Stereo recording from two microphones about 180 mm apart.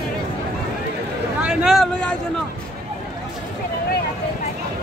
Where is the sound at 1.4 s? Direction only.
Centre (ahead or behind).